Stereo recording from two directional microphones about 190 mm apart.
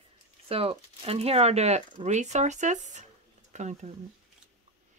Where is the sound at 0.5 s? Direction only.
30° right (ahead or behind).